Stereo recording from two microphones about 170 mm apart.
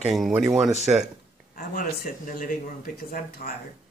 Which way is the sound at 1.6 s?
55° left (ahead or behind).